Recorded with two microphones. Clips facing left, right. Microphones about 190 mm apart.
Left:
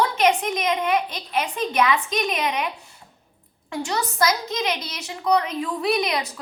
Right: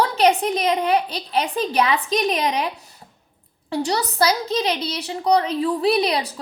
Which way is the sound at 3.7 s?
35° right (ahead or behind).